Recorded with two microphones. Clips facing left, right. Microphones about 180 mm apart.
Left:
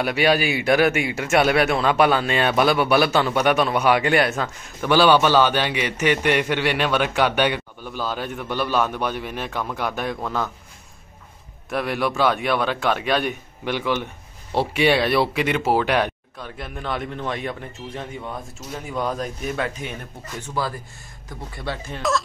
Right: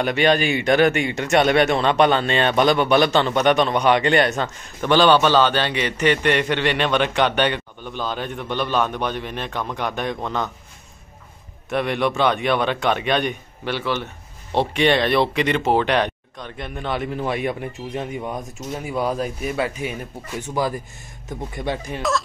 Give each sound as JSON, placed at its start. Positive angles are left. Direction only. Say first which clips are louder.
{"t": 0.0, "sound": "speech", "louder": "right 1 dB", "side_deg": 5}
{"t": 11.7, "sound": "a man's voice", "louder": "right 2 dB", "side_deg": 0}